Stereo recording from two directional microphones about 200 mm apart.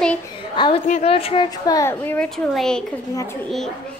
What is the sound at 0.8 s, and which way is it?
A woman's voice, 35° left (ahead or behind).